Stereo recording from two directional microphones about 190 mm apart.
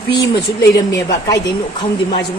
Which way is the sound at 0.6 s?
20° left (ahead or behind).